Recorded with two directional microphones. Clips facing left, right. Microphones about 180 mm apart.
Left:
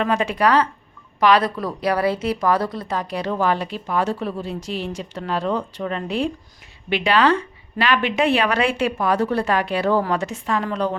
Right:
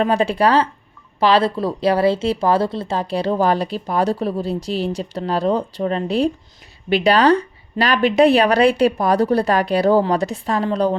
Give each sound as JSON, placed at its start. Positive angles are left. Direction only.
{"t": 0.0, "sound": "a woman's voice", "side_deg": -35}